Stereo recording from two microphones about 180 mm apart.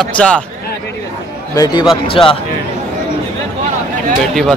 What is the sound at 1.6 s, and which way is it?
Speech, 25° left (ahead or behind).